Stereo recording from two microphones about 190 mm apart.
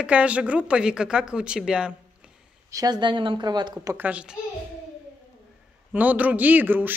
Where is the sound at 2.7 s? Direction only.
20° right (ahead or behind).